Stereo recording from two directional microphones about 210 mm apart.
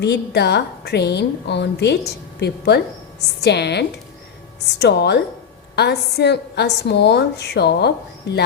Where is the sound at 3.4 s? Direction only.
55° left (ahead or behind).